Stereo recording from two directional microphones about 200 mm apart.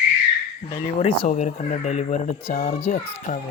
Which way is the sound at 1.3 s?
40° left (ahead or behind).